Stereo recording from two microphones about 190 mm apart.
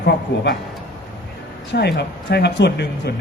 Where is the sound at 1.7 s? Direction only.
60° left (ahead or behind).